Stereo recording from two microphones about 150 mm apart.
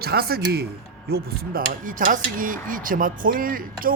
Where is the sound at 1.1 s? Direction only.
70° right (ahead or behind).